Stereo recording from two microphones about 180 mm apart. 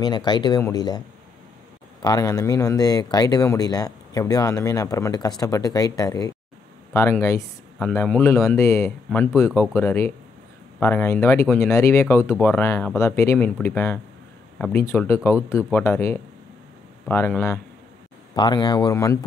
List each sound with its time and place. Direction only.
0.0 s speech: 25° left (ahead or behind)